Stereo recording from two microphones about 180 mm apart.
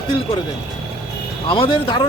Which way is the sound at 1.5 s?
30° left (ahead or behind).